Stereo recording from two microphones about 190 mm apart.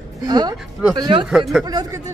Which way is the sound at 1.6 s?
20° right (ahead or behind).